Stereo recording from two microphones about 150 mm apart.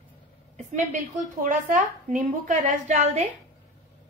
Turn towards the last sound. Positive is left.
turn(degrees=-50)  # may be behind; listen again after turning